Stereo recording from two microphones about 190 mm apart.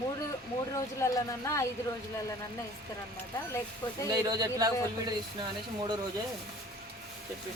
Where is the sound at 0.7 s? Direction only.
15° left (ahead or behind).